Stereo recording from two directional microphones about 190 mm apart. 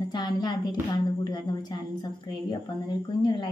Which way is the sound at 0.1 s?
20° left (ahead or behind).